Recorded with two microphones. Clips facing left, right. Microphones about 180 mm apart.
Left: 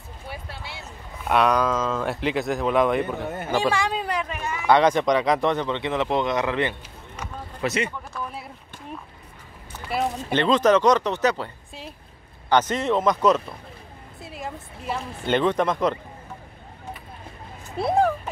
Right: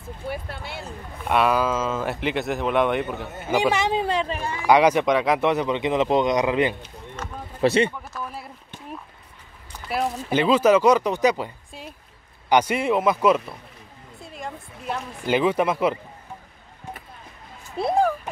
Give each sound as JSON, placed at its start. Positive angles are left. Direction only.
{"t": 0.3, "sound": "speech", "side_deg": -50}
{"t": 1.2, "sound": "speech", "side_deg": 0}
{"t": 3.7, "sound": "speech", "side_deg": -20}
{"t": 4.6, "sound": "speech", "side_deg": -10}
{"t": 7.2, "sound": "a sound", "side_deg": 10}
{"t": 7.6, "sound": "speech", "side_deg": -30}
{"t": 8.1, "sound": "a sound", "side_deg": 0}
{"t": 9.8, "sound": "speech", "side_deg": -5}
{"t": 14.2, "sound": "speech", "side_deg": 5}
{"t": 17.7, "sound": "speech", "side_deg": 0}